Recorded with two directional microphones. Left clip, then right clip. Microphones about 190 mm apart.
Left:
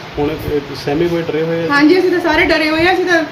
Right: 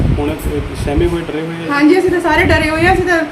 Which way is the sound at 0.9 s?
5° left (ahead or behind).